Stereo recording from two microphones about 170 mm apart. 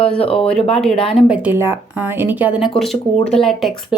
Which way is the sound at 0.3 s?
5° left (ahead or behind).